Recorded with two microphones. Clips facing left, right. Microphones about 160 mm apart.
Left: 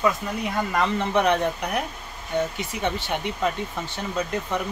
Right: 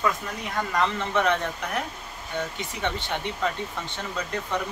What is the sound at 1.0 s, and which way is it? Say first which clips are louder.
Speech: left 3 dB; 15° left (ahead or behind).